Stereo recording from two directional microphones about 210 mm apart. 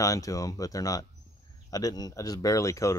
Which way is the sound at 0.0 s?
15° left (ahead or behind).